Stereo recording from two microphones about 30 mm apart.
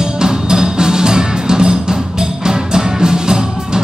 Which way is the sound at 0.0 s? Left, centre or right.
Right.